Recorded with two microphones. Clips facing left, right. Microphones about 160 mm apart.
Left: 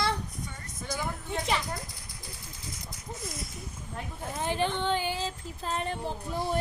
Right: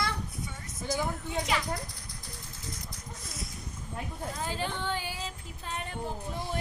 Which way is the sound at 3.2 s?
Centre (ahead or behind).